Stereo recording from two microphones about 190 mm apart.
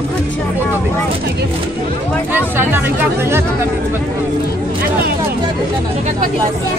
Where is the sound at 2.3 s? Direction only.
10° right (ahead or behind).